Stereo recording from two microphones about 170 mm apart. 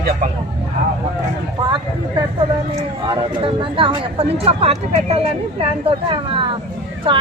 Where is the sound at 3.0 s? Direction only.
30° right (ahead or behind).